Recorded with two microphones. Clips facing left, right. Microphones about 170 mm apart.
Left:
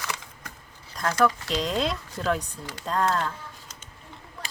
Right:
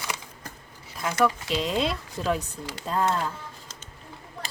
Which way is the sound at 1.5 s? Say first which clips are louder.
Even; centre (ahead or behind).